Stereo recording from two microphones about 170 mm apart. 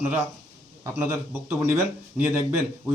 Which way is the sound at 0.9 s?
10° right (ahead or behind).